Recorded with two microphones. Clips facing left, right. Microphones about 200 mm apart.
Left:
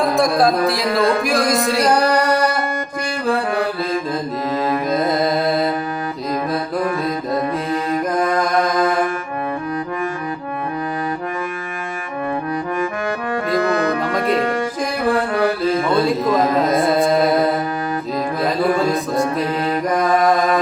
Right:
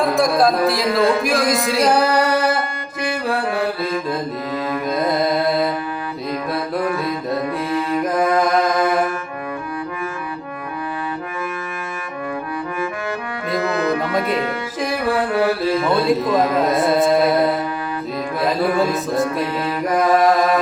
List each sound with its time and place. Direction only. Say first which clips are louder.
0.0 s music: even; centre (ahead or behind)
4.5 s music: left 4 dB; 40° left (ahead or behind)
15.9 s a sound: right 1 dB; centre (ahead or behind)
16.8 s carnatic music: even; centre (ahead or behind)
18.4 s music: right 1 dB; centre (ahead or behind)
19.5 s mantra: left 3 dB; 45° left (ahead or behind)